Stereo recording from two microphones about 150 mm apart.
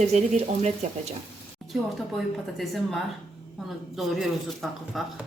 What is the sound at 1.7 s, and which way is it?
Speech, centre (ahead or behind).